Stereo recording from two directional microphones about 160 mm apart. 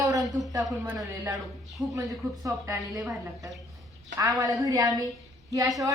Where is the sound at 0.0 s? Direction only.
20° right (ahead or behind).